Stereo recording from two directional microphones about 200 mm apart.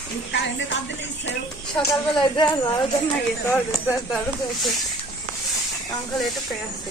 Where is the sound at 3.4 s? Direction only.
10° left (ahead or behind).